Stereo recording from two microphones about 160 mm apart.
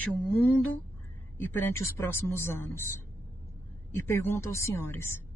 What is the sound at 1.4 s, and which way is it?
Speech, 15° left (ahead or behind).